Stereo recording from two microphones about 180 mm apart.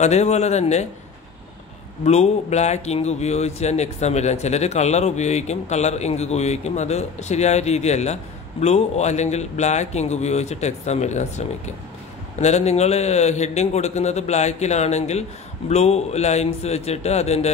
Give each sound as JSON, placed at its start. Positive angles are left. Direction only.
{"t": 0.0, "sound": "speech", "side_deg": 40}
{"t": 2.0, "sound": "speech", "side_deg": 40}